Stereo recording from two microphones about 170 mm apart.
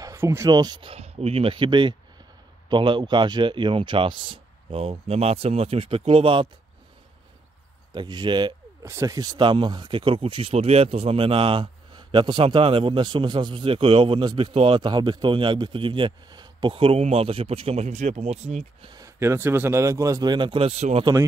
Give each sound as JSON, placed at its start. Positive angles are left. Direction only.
{"t": 0.0, "sound": "a sound", "side_deg": -15}
{"t": 0.5, "sound": "a man's voice", "side_deg": -25}
{"t": 7.9, "sound": "a man's voice", "side_deg": -25}
{"t": 18.9, "sound": "a man's voice", "side_deg": -20}